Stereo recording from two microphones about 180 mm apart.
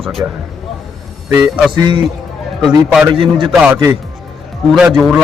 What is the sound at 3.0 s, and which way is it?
Speech, 30° right (ahead or behind).